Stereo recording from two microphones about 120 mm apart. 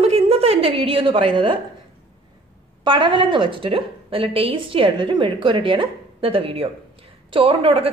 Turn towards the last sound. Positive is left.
turn(degrees=-50)  # may be behind; listen again after turning